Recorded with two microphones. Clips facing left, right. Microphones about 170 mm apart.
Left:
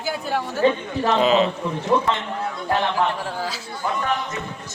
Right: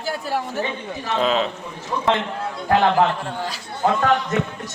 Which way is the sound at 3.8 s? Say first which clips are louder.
Right 6 dB; 75° right (ahead or behind).